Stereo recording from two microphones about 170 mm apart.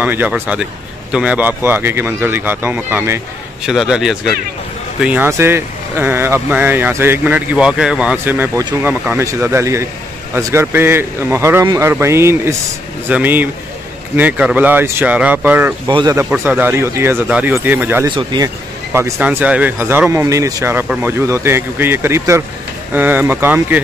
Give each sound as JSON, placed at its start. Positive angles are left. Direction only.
{"t": 0.0, "sound": "a man's voice", "side_deg": -10}
{"t": 15.9, "sound": "speech", "side_deg": -30}
{"t": 16.2, "sound": "speech", "side_deg": -10}
{"t": 18.0, "sound": "speech", "side_deg": -25}
{"t": 18.9, "sound": "speech", "side_deg": -15}